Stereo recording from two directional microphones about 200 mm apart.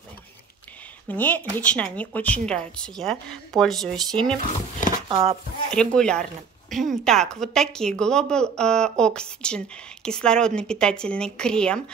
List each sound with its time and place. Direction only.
1.0 s a woman's voice: 10° left (ahead or behind)
4.7 s a sound: 40° left (ahead or behind)
5.0 s speech: 20° right (ahead or behind)
5.7 s a woman's voice: 5° left (ahead or behind)